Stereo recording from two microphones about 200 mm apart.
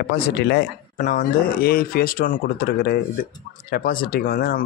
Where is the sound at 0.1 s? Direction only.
55° left (ahead or behind).